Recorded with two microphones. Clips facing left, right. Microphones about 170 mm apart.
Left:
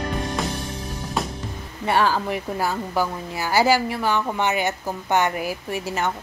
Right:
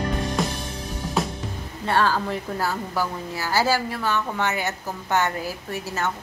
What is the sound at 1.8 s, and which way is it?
A woman's voice, 15° left (ahead or behind).